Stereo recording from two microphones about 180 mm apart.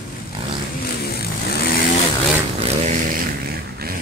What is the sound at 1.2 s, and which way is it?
Vehicle, 60° left (ahead or behind).